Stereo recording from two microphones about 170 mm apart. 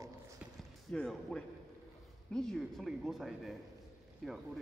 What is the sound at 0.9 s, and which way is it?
A man's voice, 5° left (ahead or behind).